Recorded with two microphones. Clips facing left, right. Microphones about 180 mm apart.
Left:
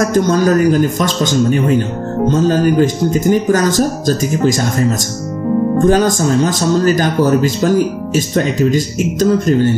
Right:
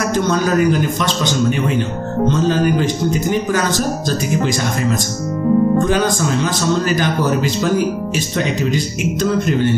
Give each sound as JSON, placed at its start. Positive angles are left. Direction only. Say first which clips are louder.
{"t": 0.1, "sound": "speech", "louder": "left 4 dB", "side_deg": 45}
{"t": 5.9, "sound": "speech", "louder": "left 5 dB", "side_deg": 45}